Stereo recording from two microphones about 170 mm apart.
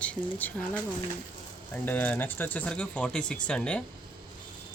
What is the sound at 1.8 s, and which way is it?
Speech, 10° left (ahead or behind).